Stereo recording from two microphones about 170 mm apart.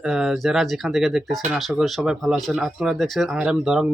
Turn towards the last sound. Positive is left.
turn(degrees=-5)  # may be behind; listen again after turning